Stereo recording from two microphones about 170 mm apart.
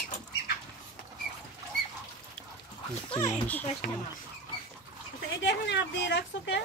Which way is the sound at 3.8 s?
65° left (ahead or behind).